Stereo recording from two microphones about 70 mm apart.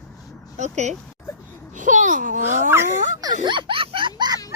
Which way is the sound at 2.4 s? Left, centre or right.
Right.